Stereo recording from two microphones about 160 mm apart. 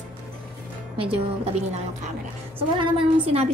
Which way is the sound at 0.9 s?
35° right (ahead or behind).